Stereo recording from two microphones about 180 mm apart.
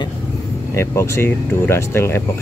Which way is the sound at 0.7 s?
15° left (ahead or behind).